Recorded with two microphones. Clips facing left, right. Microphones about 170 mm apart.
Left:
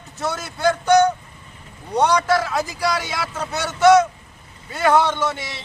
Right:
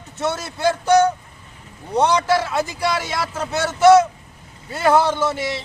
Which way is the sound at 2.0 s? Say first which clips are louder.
Even; 25° right (ahead or behind).